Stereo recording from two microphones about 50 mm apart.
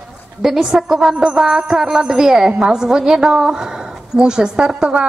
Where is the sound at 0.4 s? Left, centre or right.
Centre.